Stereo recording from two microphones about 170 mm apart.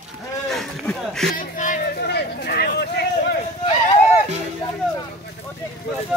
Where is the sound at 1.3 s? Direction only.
50° left (ahead or behind).